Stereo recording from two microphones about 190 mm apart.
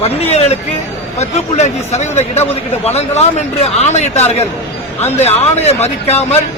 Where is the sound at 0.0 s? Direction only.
30° left (ahead or behind).